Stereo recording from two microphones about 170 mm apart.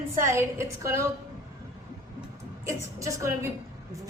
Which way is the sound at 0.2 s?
15° right (ahead or behind).